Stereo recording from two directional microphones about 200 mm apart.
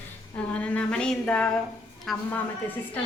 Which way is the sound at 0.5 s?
5° left (ahead or behind).